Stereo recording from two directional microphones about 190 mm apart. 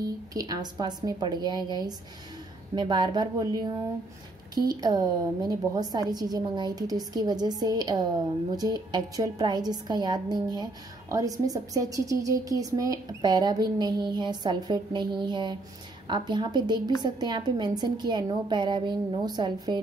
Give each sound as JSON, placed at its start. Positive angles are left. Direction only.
{"t": 0.0, "sound": "a woman's voice", "side_deg": -20}